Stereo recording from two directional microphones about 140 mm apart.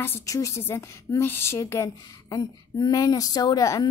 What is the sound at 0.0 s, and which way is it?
A woman's voice, 20° left (ahead or behind).